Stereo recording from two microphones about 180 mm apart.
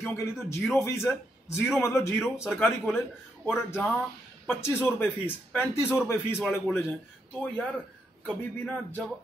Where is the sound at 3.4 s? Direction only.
10° left (ahead or behind).